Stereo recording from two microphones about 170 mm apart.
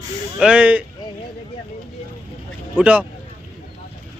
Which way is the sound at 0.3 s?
5° right (ahead or behind).